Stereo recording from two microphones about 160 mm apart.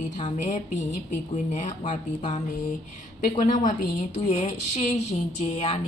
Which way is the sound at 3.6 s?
50° left (ahead or behind).